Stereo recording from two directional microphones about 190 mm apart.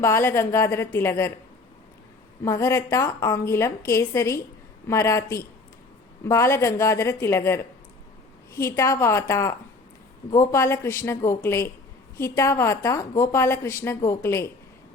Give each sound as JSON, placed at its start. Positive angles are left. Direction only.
{"t": 0.0, "sound": "a woman's voice", "side_deg": 15}
{"t": 2.4, "sound": "a woman's voice", "side_deg": 15}